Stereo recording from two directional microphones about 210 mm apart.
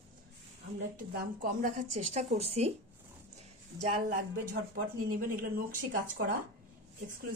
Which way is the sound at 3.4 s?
35° right (ahead or behind).